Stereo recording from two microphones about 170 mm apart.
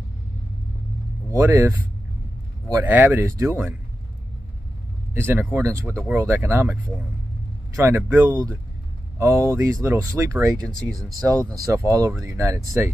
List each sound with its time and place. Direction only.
1.3 s speech: 15° right (ahead or behind)
5.1 s speech: 15° right (ahead or behind)